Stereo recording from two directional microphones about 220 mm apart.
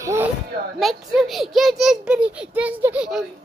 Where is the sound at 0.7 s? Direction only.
Centre (ahead or behind).